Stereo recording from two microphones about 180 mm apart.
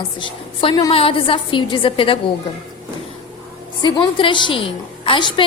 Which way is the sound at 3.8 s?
25° left (ahead or behind).